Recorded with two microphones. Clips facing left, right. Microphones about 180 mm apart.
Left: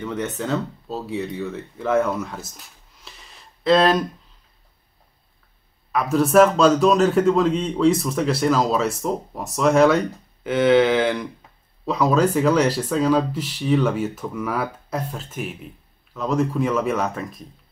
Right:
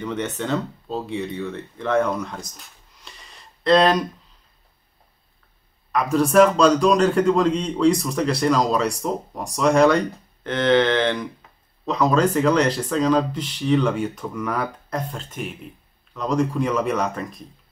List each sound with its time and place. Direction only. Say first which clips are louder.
0.0 s speech: even; centre (ahead or behind)
5.9 s a man's voice: even; 5° left (ahead or behind)